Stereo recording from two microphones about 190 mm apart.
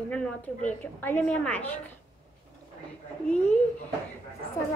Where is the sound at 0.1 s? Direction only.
5° left (ahead or behind).